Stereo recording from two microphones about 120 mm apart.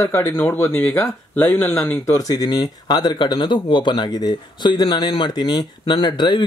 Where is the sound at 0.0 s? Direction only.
25° left (ahead or behind).